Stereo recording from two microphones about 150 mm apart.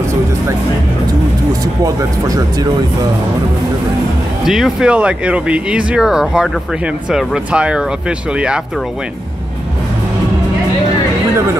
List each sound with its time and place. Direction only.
1.5 s speech: 25° right (ahead or behind)
4.5 s speech: centre (ahead or behind)